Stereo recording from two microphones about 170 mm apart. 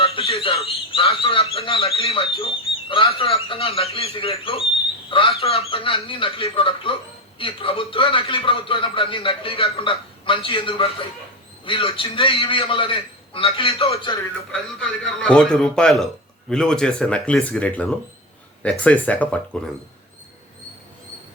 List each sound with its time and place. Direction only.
0.0 s a man's voice: 35° left (ahead or behind)
14.5 s a man's voice: 5° left (ahead or behind)